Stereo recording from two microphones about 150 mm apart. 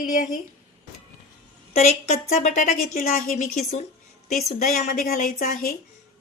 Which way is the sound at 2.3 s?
60° left (ahead or behind).